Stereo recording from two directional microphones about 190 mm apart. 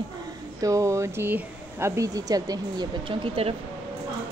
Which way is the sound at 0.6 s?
15° right (ahead or behind).